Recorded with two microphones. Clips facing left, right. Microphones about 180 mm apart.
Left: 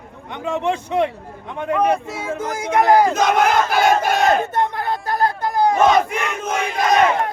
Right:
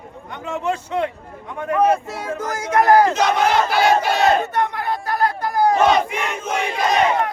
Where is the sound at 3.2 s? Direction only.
50° left (ahead or behind).